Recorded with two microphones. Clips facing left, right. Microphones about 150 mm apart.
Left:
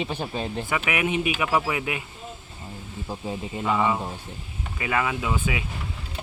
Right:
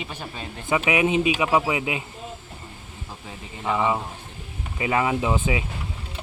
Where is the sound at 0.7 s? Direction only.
20° right (ahead or behind).